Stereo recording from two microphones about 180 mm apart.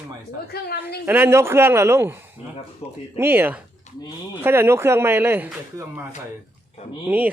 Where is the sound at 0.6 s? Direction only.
65° left (ahead or behind).